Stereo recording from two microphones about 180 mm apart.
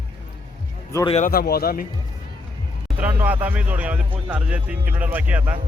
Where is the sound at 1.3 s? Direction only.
55° left (ahead or behind).